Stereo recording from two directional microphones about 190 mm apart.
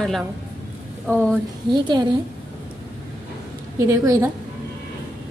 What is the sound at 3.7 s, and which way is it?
Speech, 15° right (ahead or behind).